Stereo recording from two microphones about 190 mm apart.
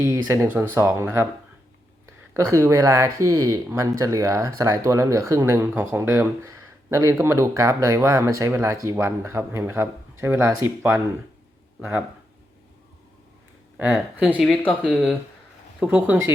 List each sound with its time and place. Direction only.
0.0 s speech: 15° right (ahead or behind)
2.3 s speech: 15° right (ahead or behind)
11.8 s speech: 10° right (ahead or behind)
13.7 s speech: 5° right (ahead or behind)